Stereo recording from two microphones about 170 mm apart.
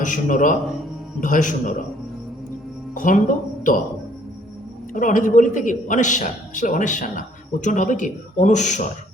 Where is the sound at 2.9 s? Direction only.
50° left (ahead or behind).